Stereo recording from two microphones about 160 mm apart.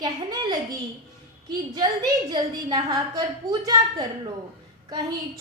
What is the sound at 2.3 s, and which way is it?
A woman's voice, 25° right (ahead or behind).